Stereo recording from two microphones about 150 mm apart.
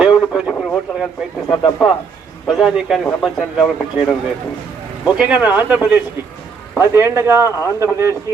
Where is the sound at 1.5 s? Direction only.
30° left (ahead or behind).